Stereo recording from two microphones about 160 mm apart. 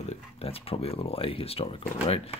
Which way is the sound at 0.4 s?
40° left (ahead or behind).